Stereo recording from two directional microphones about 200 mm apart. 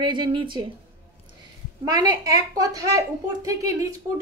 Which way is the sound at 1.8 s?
20° right (ahead or behind).